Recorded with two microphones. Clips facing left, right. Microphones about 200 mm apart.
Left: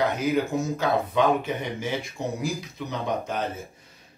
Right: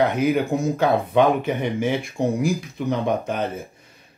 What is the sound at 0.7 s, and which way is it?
Speech, 55° right (ahead or behind).